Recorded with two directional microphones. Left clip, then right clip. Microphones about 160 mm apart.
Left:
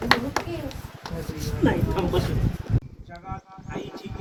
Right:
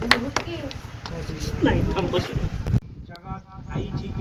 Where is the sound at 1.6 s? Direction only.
25° left (ahead or behind).